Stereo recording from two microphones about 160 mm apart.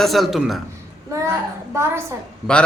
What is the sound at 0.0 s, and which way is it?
Speech, centre (ahead or behind).